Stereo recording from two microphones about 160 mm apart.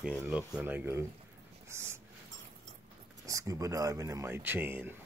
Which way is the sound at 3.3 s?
20° right (ahead or behind).